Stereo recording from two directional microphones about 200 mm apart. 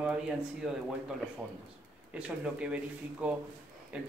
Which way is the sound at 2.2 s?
5° right (ahead or behind).